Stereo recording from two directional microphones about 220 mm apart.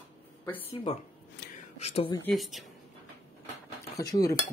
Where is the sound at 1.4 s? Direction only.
50° left (ahead or behind).